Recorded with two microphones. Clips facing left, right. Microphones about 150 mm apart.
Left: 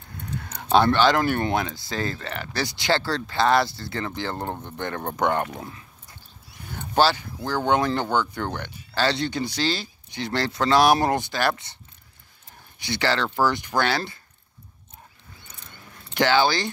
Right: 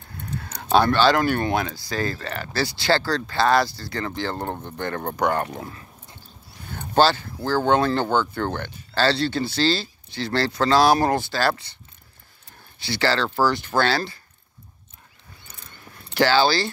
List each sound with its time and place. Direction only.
0.7 s speech: 20° left (ahead or behind)
7.0 s speech: 10° left (ahead or behind)
12.7 s speech: 15° left (ahead or behind)
16.1 s speech: 20° left (ahead or behind)